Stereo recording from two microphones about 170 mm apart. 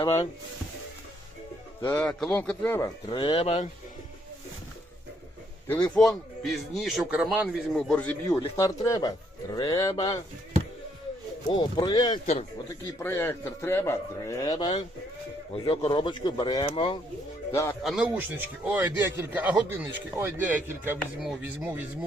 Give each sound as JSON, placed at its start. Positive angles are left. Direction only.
{"t": 1.9, "sound": "speech", "side_deg": 10}
{"t": 3.1, "sound": "speech", "side_deg": 30}
{"t": 5.6, "sound": "a man's voice", "side_deg": 10}
{"t": 7.4, "sound": "a man's voice", "side_deg": 5}
{"t": 8.4, "sound": "speech", "side_deg": 20}
{"t": 11.4, "sound": "speech", "side_deg": 25}
{"t": 12.2, "sound": "speech", "side_deg": 40}
{"t": 13.0, "sound": "speech", "side_deg": 10}
{"t": 15.5, "sound": "speech", "side_deg": 35}
{"t": 17.5, "sound": "speech", "side_deg": 15}
{"t": 17.8, "sound": "a man's voice", "side_deg": -5}